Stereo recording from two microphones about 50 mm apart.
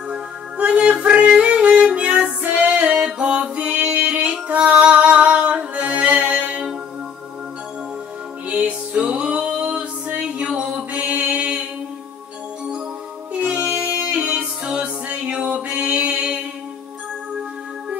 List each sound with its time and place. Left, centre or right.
0.6 s music: right
8.5 s music: right
10.9 s mantra: right
13.3 s music: right